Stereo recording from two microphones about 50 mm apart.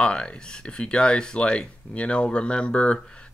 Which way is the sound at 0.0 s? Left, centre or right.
Centre.